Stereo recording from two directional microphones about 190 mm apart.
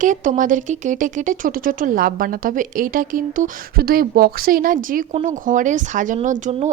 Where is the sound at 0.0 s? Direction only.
45° right (ahead or behind).